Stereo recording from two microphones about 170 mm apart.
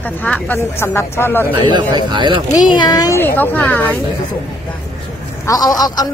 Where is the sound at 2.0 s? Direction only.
25° right (ahead or behind).